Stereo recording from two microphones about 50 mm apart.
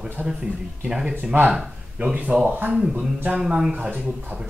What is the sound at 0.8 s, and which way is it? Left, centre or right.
Speech, centre.